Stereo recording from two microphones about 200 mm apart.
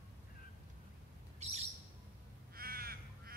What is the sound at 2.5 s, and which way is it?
Crow, 50° right (ahead or behind).